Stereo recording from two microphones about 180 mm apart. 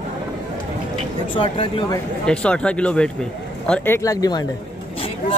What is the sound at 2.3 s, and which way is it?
Speech, 5° left (ahead or behind).